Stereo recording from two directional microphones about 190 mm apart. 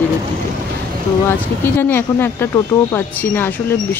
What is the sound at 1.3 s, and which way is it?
A woman's voice, 10° left (ahead or behind).